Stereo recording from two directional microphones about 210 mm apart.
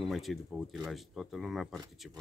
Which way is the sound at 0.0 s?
Centre (ahead or behind).